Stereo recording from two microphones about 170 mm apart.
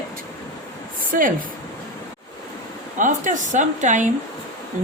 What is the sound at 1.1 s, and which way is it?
Speech, 60° right (ahead or behind).